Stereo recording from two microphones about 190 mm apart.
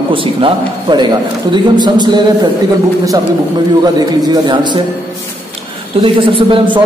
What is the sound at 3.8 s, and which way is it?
A man's voice, 20° right (ahead or behind).